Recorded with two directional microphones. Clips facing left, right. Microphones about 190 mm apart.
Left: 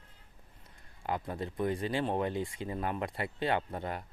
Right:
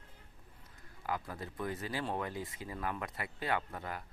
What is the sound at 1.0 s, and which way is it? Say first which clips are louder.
Speech: left 4 dB; 25° left (ahead or behind).